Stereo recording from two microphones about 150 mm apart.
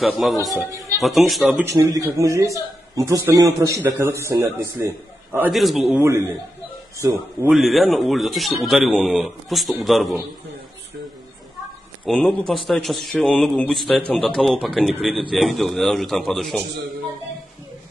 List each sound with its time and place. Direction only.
0.0 s a man's voice: centre (ahead or behind)
1.8 s a man's voice: 25° right (ahead or behind)
5.5 s a man's voice: centre (ahead or behind)
5.9 s a man's voice: 15° right (ahead or behind)
7.4 s a man's voice: centre (ahead or behind)
12.1 s a man's voice: 5° left (ahead or behind)